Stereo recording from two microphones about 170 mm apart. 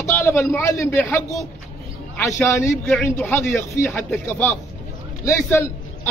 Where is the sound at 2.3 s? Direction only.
15° left (ahead or behind).